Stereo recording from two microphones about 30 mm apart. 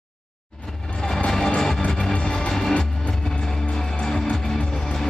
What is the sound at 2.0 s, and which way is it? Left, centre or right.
Music, centre.